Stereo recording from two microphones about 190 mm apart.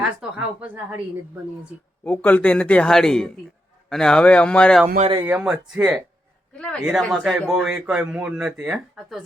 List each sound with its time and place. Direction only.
0.0 s speech: 5° right (ahead or behind)
2.0 s speech: 10° left (ahead or behind)
4.9 s speech: 30° right (ahead or behind)
5.2 s speech: 5° right (ahead or behind)